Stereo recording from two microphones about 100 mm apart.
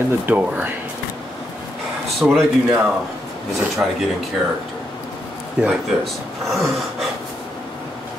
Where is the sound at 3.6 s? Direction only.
5° right (ahead or behind).